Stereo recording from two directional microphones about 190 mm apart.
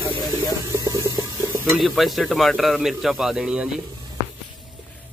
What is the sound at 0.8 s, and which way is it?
Stir, 15° right (ahead or behind).